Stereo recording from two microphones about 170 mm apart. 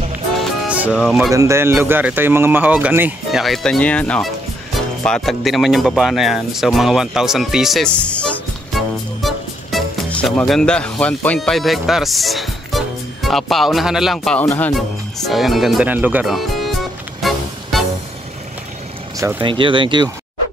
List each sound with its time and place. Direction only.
0.4 s music: 5° right (ahead or behind)
0.9 s speech: centre (ahead or behind)
1.3 s speech: 15° right (ahead or behind); by 14.4 s centre (ahead or behind)
14.4 s speech: 15° left (ahead or behind)
15.2 s speech: centre (ahead or behind)
17.2 s music: centre (ahead or behind)
19.1 s speech: 15° right (ahead or behind)
19.4 s speech: 30° right (ahead or behind)